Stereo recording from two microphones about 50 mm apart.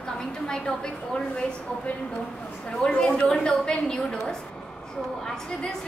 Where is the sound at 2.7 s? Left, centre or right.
Centre.